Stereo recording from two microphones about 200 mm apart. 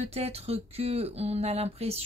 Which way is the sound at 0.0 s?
30° right (ahead or behind).